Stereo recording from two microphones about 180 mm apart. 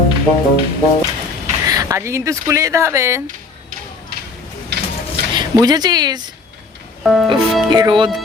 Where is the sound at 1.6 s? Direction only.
20° right (ahead or behind).